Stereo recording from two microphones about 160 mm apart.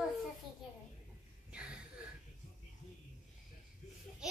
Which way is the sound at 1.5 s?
5° right (ahead or behind).